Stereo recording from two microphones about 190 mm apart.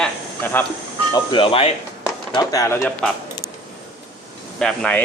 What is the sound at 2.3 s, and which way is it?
Speech, 20° left (ahead or behind).